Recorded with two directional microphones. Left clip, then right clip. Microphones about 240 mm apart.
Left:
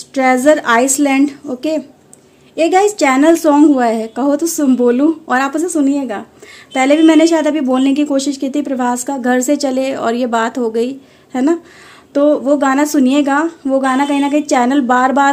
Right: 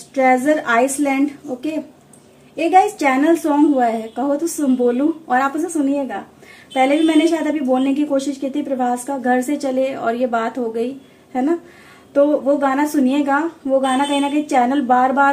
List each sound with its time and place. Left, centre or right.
0.1 s a woman's voice: left